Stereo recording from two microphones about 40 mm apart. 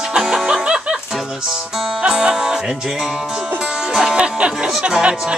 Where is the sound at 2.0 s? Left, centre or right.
Centre.